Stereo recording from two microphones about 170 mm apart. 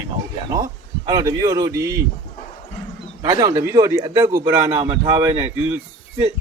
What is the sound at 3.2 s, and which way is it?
Speech, 25° right (ahead or behind).